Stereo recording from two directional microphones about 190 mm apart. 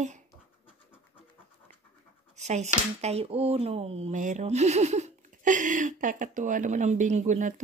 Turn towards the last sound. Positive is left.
turn(degrees=-40)  # may be behind; listen again after turning